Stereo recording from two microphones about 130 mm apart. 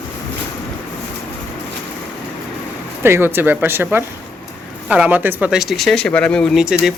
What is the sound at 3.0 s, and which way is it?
Speech, 20° right (ahead or behind).